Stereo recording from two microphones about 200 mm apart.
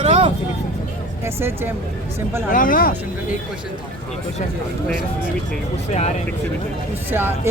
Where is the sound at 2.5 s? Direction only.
45° left (ahead or behind).